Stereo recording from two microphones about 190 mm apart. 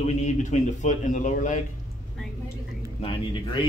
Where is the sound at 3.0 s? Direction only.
30° left (ahead or behind).